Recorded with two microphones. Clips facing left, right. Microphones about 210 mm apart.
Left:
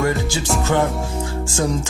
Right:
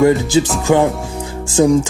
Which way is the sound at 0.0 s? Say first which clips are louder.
Right 9 dB; 20° right (ahead or behind).